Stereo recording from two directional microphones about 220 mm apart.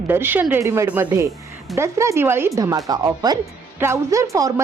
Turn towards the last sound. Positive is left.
turn(degrees=-15)  # may be behind; listen again after turning